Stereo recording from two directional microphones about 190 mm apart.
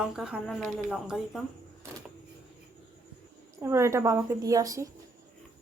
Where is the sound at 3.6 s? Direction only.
15° right (ahead or behind).